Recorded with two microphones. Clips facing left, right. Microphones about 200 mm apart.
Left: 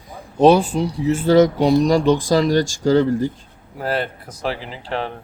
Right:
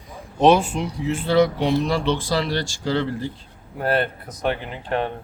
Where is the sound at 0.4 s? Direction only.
40° left (ahead or behind).